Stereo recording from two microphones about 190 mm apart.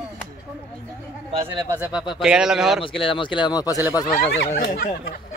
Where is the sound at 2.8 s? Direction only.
25° left (ahead or behind).